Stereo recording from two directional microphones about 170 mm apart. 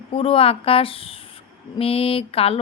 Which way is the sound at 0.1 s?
35° left (ahead or behind).